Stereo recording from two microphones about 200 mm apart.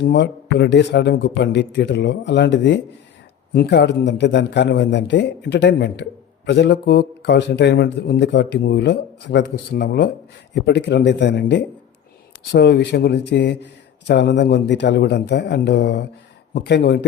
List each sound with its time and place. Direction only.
0.0 s a man's voice: 60° left (ahead or behind)